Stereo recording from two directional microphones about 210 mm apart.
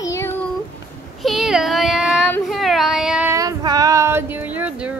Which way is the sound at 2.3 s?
5° left (ahead or behind).